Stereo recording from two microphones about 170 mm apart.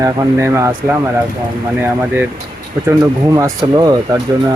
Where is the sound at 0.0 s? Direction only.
20° right (ahead or behind).